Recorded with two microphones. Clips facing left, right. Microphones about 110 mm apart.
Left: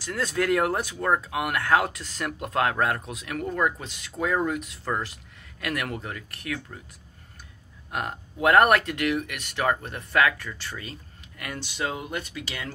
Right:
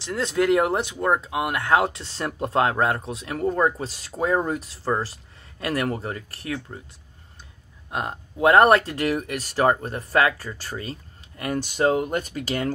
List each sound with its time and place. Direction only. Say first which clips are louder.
0.0 s speech: right 4 dB; 25° right (ahead or behind)
7.9 s speech: right 2 dB; 25° right (ahead or behind); by 12.7 s 45° right (ahead or behind)